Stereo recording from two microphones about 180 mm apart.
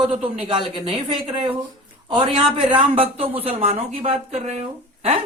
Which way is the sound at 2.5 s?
30° right (ahead or behind).